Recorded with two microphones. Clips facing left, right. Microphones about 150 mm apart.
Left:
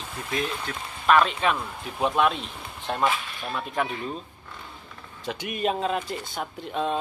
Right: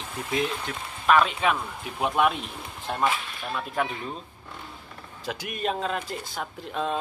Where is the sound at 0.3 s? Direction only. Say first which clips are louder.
Right 2 dB; 20° right (ahead or behind).